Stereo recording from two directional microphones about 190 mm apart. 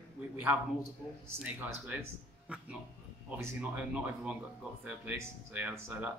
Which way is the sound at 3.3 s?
5° right (ahead or behind).